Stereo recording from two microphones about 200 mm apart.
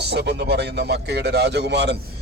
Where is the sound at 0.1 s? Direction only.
55° right (ahead or behind).